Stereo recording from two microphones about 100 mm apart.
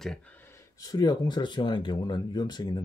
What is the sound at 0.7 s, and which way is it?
Speech, 40° left (ahead or behind).